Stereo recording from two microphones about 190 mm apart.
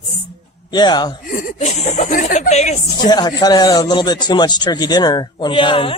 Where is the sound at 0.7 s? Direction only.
20° left (ahead or behind).